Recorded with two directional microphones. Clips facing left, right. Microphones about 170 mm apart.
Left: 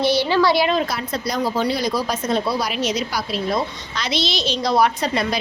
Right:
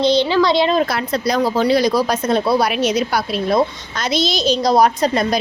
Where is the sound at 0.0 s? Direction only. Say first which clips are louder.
Right 3 dB; 20° right (ahead or behind).